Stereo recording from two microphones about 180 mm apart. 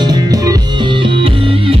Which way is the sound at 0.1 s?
20° right (ahead or behind).